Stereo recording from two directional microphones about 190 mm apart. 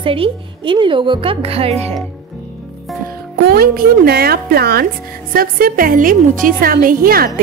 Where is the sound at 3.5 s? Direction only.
55° right (ahead or behind).